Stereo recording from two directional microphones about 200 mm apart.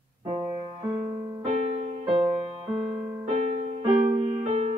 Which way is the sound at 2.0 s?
25° right (ahead or behind).